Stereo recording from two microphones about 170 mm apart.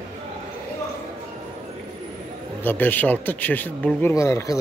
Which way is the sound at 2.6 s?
10° left (ahead or behind).